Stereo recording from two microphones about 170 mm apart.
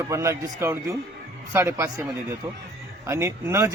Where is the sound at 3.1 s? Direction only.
15° right (ahead or behind).